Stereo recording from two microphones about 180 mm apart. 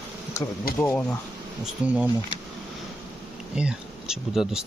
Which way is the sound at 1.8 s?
5° right (ahead or behind).